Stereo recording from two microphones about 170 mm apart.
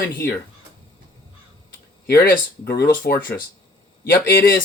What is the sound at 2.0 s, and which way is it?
Speech, 65° left (ahead or behind).